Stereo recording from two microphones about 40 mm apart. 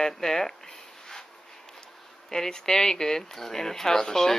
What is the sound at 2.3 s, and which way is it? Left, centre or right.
Speech, centre.